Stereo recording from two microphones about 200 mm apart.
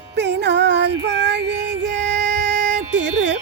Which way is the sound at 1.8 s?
60° right (ahead or behind).